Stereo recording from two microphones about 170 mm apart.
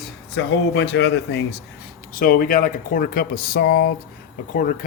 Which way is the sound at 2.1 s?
60° left (ahead or behind).